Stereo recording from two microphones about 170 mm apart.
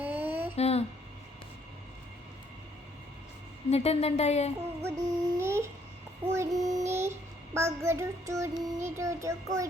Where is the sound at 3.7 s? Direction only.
35° left (ahead or behind).